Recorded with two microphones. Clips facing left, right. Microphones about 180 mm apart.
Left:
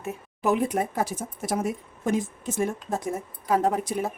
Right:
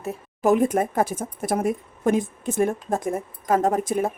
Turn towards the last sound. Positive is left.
turn(degrees=-50)  # may be behind; listen again after turning